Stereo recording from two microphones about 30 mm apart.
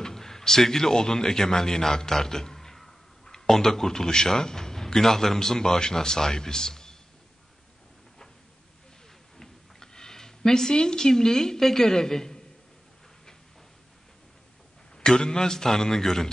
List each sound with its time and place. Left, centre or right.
0.0 s a man's voice: centre
9.4 s a sound: centre
11.1 s a man's voice: centre
15.0 s a man's voice: left